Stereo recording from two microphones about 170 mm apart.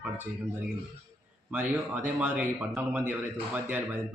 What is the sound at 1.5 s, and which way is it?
A man's voice, 5° right (ahead or behind).